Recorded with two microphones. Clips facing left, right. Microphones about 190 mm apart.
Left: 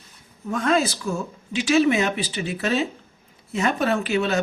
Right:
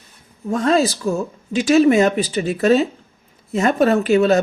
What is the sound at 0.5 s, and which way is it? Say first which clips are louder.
Speech: right 5 dB; 35° right (ahead or behind).